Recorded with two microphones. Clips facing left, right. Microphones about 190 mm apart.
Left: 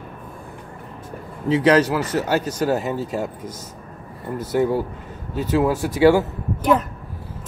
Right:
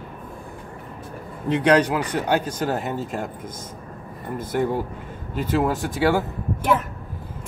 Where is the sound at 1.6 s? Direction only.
5° left (ahead or behind).